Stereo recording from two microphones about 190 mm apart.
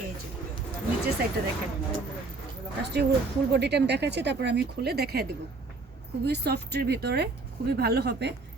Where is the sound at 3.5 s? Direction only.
60° right (ahead or behind).